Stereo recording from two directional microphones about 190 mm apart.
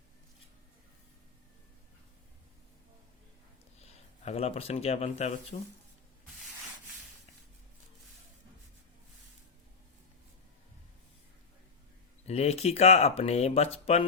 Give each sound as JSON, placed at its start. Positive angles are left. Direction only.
{"t": 4.2, "sound": "speech", "side_deg": 35}
{"t": 12.3, "sound": "speech", "side_deg": 35}